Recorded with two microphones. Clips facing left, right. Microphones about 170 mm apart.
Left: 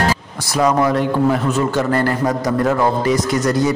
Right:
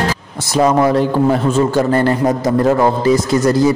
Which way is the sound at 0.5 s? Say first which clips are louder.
Right 3 dB; 30° right (ahead or behind).